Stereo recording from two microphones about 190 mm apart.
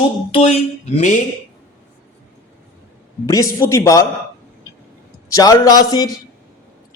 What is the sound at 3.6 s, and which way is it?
Speech, 15° left (ahead or behind).